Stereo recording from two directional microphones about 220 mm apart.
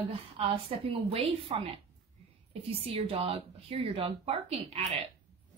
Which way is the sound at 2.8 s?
25° right (ahead or behind).